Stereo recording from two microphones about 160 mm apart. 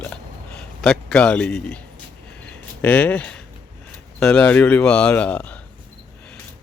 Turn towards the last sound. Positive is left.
turn(degrees=10)  # may be behind; listen again after turning